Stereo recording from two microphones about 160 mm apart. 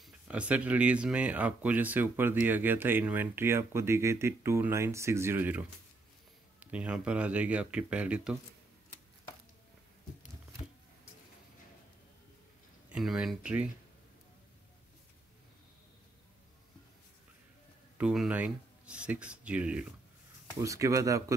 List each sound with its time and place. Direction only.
0.0 s speech: 10° right (ahead or behind)
12.9 s speech: 5° right (ahead or behind)
17.9 s speech: 5° right (ahead or behind)
20.6 s speech: 20° right (ahead or behind)